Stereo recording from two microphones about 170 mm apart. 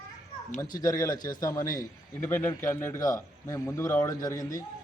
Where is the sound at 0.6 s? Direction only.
20° left (ahead or behind).